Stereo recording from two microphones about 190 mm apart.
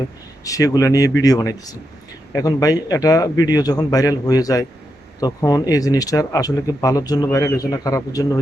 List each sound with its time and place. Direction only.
0.4 s speech: 20° left (ahead or behind)